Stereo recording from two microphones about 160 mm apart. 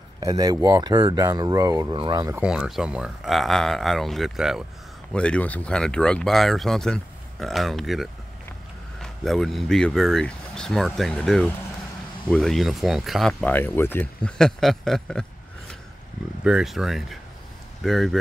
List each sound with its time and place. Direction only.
0.2 s speech: 25° right (ahead or behind)
2.4 s speech: 5° right (ahead or behind)
13.4 s speech: 10° left (ahead or behind)
16.4 s speech: 5° right (ahead or behind)